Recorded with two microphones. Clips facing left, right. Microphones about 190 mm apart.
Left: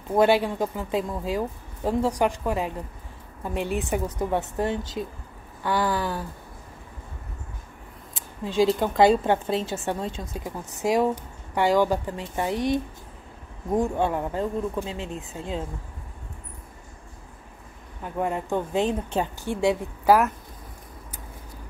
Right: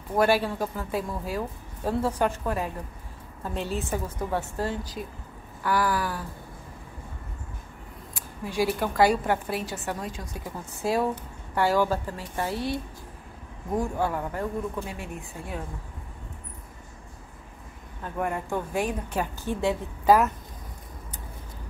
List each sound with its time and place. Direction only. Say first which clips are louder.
0.1 s a woman's voice: left 3 dB; 20° left (ahead or behind)
8.1 s a woman's voice: left 3 dB; 20° left (ahead or behind)
18.0 s a woman's voice: left 2 dB; 20° left (ahead or behind)
19.4 s speech: left 4 dB; 15° left (ahead or behind)